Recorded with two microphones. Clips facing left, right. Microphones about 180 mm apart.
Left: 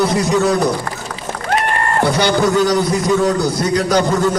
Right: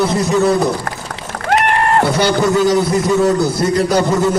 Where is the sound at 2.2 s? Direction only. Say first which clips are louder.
Left 1 dB; 5° right (ahead or behind).